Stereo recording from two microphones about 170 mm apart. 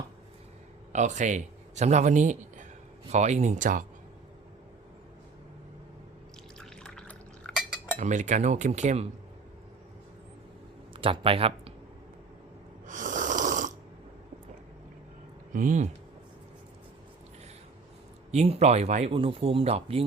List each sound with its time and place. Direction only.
0.9 s a man's voice: 45° right (ahead or behind)
3.1 s cutlery: 40° right (ahead or behind)
6.6 s liquid: 5° left (ahead or behind)
7.9 s cutlery: 45° right (ahead or behind)
10.9 s speech: 30° right (ahead or behind)
12.9 s snoring: 50° right (ahead or behind)
15.5 s cutlery: 50° right (ahead or behind)
18.3 s speech: 40° right (ahead or behind)